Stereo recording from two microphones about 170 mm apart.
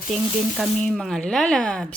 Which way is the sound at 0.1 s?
Centre (ahead or behind).